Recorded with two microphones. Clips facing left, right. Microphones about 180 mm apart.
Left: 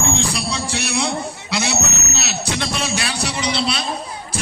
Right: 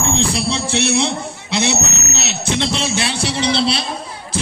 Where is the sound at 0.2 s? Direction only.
25° right (ahead or behind).